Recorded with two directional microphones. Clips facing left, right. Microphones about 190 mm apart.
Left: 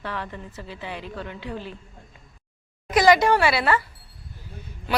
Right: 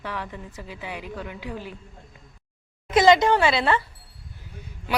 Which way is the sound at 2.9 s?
25° right (ahead or behind).